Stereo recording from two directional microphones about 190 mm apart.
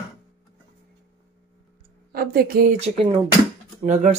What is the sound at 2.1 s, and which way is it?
Speech, 50° right (ahead or behind).